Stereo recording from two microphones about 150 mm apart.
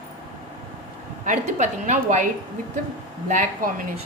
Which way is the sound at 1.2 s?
55° right (ahead or behind).